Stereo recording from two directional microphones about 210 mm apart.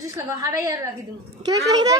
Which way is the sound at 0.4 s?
15° right (ahead or behind).